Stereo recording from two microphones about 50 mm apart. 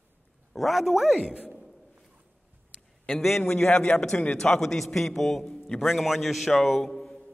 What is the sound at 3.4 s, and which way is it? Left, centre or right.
Speech, left.